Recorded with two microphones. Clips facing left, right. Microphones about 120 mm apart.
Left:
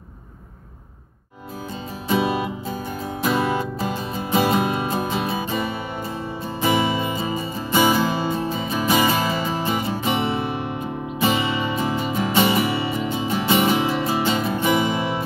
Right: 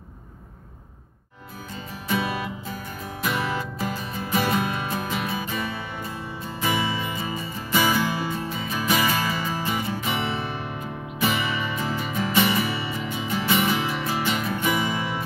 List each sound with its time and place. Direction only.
2.0 s music: 25° left (ahead or behind)